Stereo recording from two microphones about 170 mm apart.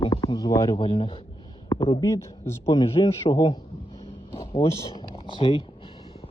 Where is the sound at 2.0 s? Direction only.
20° left (ahead or behind).